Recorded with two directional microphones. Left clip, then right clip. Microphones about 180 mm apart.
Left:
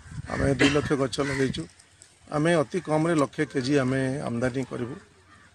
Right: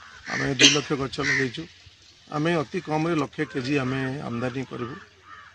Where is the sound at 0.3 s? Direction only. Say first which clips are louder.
Right 4 dB; 25° left (ahead or behind).